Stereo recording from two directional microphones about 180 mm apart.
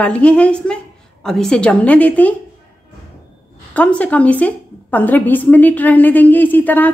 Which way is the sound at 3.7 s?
10° left (ahead or behind).